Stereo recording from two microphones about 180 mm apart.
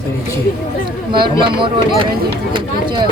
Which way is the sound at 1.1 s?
25° right (ahead or behind).